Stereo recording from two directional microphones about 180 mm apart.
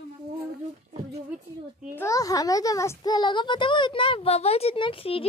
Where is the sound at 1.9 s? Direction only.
15° left (ahead or behind).